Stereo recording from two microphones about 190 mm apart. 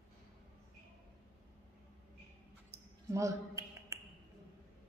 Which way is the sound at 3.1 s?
15° right (ahead or behind).